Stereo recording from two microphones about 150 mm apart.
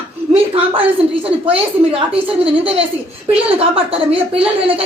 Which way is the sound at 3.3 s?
40° right (ahead or behind).